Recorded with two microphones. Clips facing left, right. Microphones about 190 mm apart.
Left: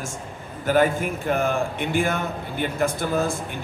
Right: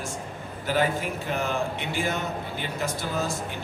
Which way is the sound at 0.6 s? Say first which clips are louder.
Left 5 dB; 50° left (ahead or behind).